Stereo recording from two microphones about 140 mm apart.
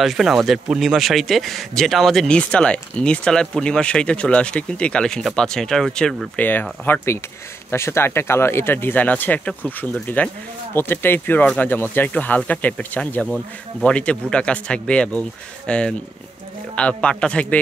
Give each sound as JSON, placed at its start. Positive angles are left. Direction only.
{"t": 0.0, "sound": "a man's voice", "side_deg": 0}